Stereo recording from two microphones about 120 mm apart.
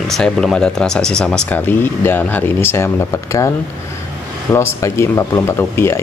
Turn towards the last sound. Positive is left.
turn(degrees=20)  # may be behind; listen again after turning